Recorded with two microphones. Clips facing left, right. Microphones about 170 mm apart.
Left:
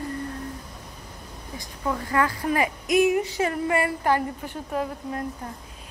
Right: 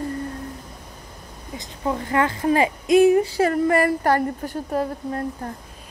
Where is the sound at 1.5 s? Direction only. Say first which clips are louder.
Right 3 dB; 25° right (ahead or behind).